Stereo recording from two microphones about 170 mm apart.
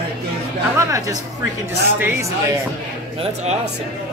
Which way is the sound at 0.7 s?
20° right (ahead or behind).